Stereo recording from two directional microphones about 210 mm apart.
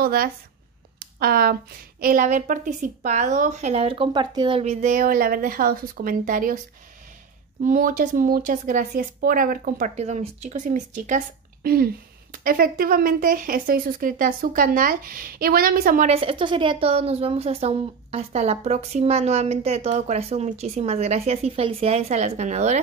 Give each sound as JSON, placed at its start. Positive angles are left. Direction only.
{"t": 0.0, "sound": "a woman's voice", "side_deg": -45}
{"t": 7.6, "sound": "speech", "side_deg": -40}